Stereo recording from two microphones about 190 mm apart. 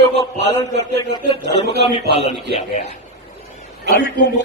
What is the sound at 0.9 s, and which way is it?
A man's voice, 30° left (ahead or behind).